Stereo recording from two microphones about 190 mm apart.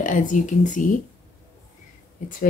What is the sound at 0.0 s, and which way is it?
Speech, 45° left (ahead or behind).